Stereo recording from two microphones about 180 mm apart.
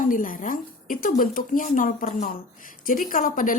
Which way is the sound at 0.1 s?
50° left (ahead or behind).